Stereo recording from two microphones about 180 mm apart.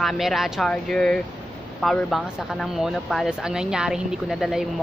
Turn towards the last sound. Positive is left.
turn(degrees=0)  # may be behind; listen again after turning